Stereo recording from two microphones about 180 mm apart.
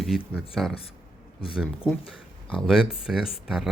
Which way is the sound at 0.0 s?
Centre (ahead or behind).